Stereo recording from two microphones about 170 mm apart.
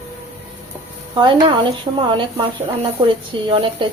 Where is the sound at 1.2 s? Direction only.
30° right (ahead or behind).